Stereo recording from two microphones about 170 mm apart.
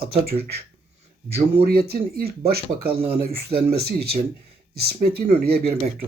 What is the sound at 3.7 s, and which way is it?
Speech, 70° right (ahead or behind).